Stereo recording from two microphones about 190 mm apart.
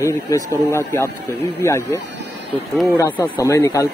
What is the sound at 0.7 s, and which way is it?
A man's voice, 15° left (ahead or behind).